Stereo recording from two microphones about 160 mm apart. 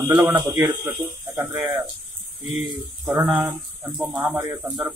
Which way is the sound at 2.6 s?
10° right (ahead or behind).